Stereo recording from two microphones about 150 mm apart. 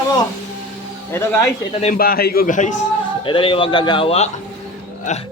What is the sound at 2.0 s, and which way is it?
Speech, 85° left.